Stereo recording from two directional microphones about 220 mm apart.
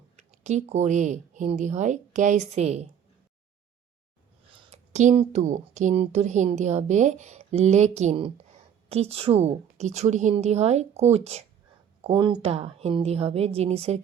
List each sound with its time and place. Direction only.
0.2 s a woman's voice: 30° right (ahead or behind)
4.7 s a woman's voice: 30° right (ahead or behind)